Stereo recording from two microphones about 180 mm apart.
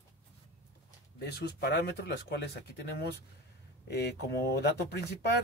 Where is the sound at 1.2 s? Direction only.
65° left (ahead or behind).